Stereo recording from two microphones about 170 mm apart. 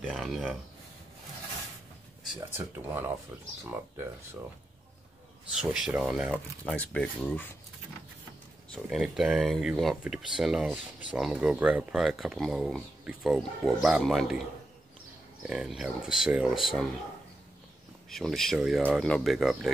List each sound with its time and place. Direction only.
0.0 s speech: centre (ahead or behind)
2.5 s speech: 10° right (ahead or behind)
5.6 s speech: 5° right (ahead or behind)
6.6 s speech: 5° left (ahead or behind)
9.0 s speech: centre (ahead or behind)
15.4 s speech: 5° right (ahead or behind)
18.1 s speech: centre (ahead or behind)